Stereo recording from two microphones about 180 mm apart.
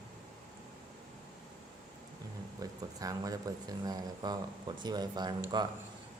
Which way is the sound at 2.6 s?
20° right (ahead or behind).